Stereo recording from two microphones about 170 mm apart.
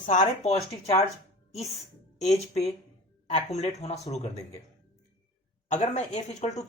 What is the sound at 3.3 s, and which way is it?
Speech, 40° left (ahead or behind).